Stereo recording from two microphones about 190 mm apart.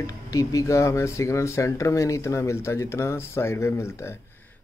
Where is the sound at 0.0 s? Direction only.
15° left (ahead or behind).